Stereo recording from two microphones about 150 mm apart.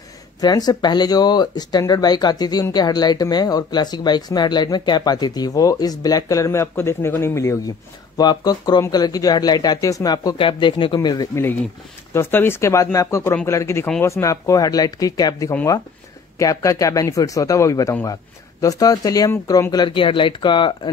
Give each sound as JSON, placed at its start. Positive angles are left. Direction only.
{"t": 0.4, "sound": "speech", "side_deg": 25}
{"t": 12.1, "sound": "speech", "side_deg": 15}